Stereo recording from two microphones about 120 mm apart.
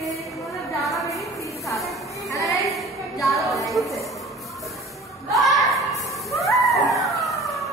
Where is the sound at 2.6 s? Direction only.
Centre (ahead or behind).